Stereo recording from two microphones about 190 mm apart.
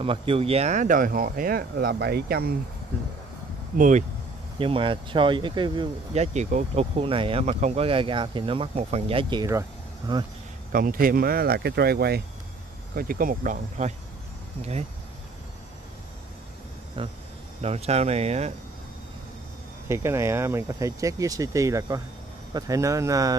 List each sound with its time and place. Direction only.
0.0 s speech: 30° right (ahead or behind); by 2.5 s 55° right (ahead or behind)
3.7 s speech: 45° right (ahead or behind)
4.6 s speech: 30° right (ahead or behind)
10.7 s speech: 50° right (ahead or behind)
17.0 s speech: 25° right (ahead or behind)
19.9 s speech: 15° right (ahead or behind)